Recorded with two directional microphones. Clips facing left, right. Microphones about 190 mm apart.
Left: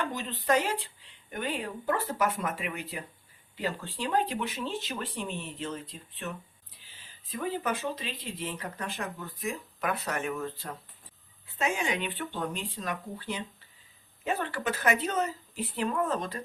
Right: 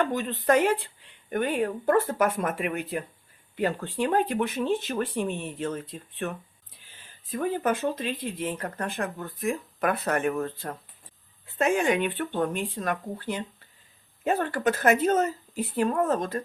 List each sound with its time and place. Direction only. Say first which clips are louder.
0.0 s speech: right 7 dB; 55° right (ahead or behind)